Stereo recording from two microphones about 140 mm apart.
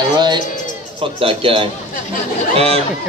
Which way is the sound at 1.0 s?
40° right (ahead or behind).